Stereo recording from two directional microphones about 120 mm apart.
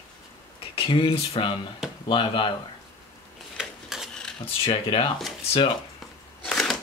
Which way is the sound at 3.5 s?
5° right (ahead or behind).